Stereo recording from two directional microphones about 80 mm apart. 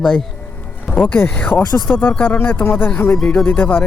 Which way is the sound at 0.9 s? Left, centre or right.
Left.